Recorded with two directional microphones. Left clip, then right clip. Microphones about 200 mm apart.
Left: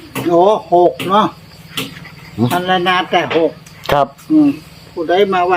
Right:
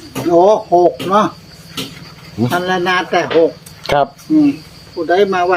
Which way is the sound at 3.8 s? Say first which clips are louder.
Even; 15° left (ahead or behind).